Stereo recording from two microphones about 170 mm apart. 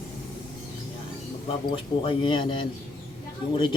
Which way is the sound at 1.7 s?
30° left (ahead or behind).